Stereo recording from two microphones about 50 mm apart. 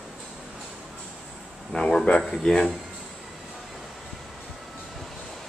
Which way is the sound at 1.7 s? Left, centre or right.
Centre.